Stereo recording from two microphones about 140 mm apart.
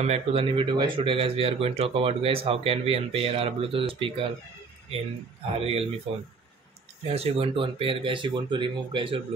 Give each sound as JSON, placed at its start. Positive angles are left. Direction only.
{"t": 0.0, "sound": "speech", "side_deg": -45}
{"t": 5.6, "sound": "speech", "side_deg": -45}